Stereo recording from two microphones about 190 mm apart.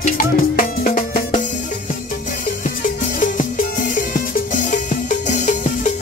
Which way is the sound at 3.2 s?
45° left (ahead or behind).